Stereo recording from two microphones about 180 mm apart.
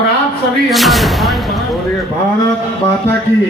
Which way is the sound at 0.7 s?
Centre (ahead or behind).